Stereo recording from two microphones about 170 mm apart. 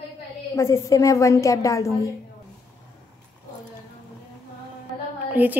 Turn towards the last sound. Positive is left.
turn(degrees=-10)  # may be behind; listen again after turning